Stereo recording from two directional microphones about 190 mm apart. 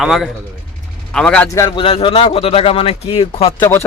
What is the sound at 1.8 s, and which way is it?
A man's voice, 30° left (ahead or behind).